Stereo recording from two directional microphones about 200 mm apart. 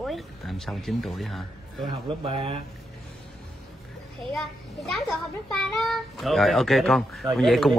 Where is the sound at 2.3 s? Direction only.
30° right (ahead or behind).